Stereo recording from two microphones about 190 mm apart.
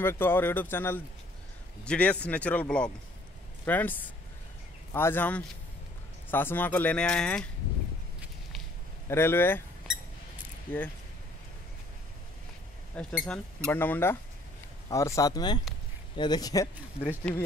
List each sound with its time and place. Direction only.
0.0 s speech: 10° left (ahead or behind)
8.2 s walk: centre (ahead or behind)
9.0 s speech: 15° left (ahead or behind)
10.7 s speech: 10° left (ahead or behind)
12.9 s speech: 5° left (ahead or behind); by 16.6 s 20° left (ahead or behind)
17.2 s speech: 5° left (ahead or behind)